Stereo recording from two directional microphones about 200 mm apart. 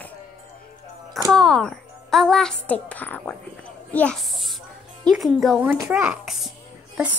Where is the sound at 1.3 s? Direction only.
Centre (ahead or behind).